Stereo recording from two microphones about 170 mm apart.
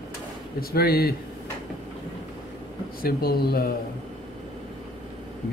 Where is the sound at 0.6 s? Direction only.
65° left (ahead or behind).